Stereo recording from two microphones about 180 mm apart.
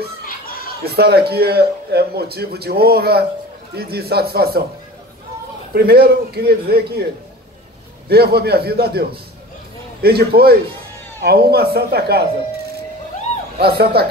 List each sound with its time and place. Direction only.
0.8 s speech: 60° right (ahead or behind)
5.8 s speech: 60° right (ahead or behind)
8.1 s speech: 60° right (ahead or behind)
10.0 s speech: 60° right (ahead or behind)
13.6 s speech: 60° right (ahead or behind)